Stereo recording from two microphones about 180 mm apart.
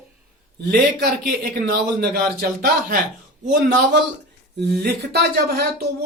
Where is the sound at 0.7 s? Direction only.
65° right (ahead or behind).